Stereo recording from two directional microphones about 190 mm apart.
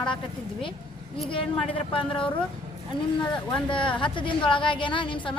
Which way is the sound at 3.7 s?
25° left (ahead or behind).